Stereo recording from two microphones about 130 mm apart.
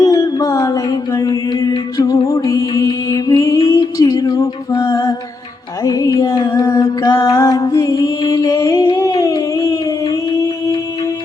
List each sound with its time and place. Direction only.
0.0 s music: 25° left (ahead or behind)
9.0 s a sound: 25° left (ahead or behind)
10.1 s music: 30° left (ahead or behind)